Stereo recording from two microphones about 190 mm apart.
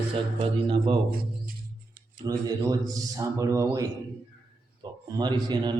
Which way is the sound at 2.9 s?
15° right (ahead or behind).